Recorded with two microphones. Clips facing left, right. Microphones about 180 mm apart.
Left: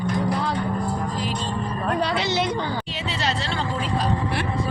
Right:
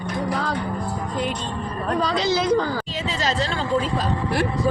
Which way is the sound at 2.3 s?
90° right.